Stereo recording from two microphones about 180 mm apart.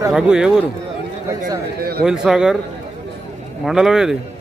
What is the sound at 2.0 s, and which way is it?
Speech, 5° right (ahead or behind).